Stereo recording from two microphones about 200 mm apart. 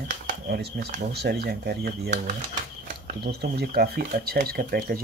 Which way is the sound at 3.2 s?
50° right (ahead or behind).